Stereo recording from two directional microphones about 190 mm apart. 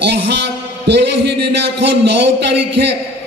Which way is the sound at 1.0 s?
65° right (ahead or behind).